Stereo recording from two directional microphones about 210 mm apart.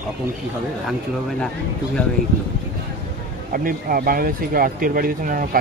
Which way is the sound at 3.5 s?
45° right (ahead or behind).